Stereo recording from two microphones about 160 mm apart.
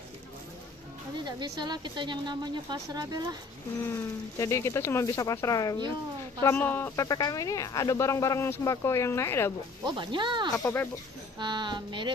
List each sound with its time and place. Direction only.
1.2 s a woman's voice: 25° right (ahead or behind)
3.8 s speech: 20° left (ahead or behind)
9.8 s a woman's voice: 30° right (ahead or behind)
10.6 s speech: 5° left (ahead or behind)
11.3 s a woman's voice: 30° right (ahead or behind)